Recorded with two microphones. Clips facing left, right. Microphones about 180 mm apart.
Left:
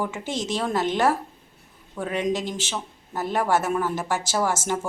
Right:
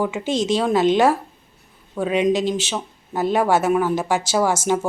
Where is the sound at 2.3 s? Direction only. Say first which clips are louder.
Right 8 dB; 80° right.